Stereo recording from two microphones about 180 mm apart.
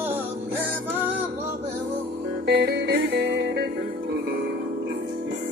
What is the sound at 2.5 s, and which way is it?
Music, 65° right (ahead or behind).